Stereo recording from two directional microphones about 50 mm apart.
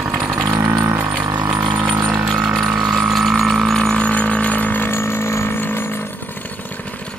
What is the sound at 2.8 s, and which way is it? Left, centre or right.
Vehicle, centre.